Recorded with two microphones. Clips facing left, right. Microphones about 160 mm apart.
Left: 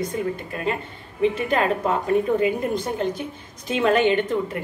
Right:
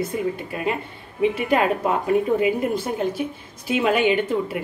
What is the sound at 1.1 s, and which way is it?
Speech, 10° right (ahead or behind).